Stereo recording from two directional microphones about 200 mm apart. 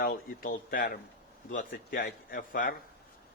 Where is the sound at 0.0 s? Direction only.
45° left (ahead or behind).